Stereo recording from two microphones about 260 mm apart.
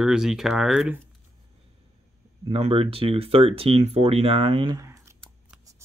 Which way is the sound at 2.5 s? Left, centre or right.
Right.